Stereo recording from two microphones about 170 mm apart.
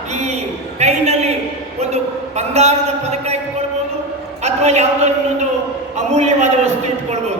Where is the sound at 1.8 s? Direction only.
40° right (ahead or behind).